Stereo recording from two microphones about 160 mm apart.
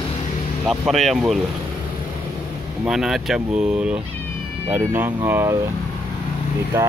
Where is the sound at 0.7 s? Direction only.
Centre (ahead or behind).